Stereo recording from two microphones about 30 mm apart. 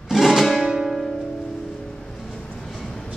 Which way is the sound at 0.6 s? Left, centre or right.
Centre.